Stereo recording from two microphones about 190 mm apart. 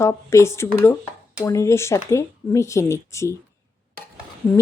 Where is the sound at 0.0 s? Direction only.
15° left (ahead or behind).